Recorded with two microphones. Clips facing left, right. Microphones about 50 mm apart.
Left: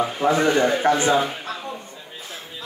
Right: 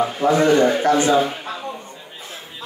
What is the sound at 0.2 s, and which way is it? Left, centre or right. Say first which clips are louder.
Speech: right 3 dB; centre.